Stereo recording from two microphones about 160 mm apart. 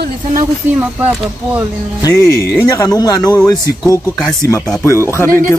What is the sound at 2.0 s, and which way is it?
Speech, 20° left (ahead or behind).